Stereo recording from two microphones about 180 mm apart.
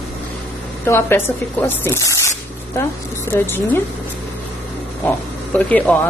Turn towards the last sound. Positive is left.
turn(degrees=10)  # may be behind; listen again after turning